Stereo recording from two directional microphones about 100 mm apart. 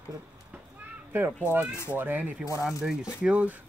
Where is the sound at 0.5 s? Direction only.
20° right (ahead or behind).